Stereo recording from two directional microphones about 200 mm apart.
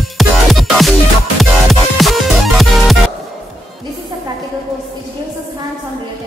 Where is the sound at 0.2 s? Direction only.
Centre (ahead or behind).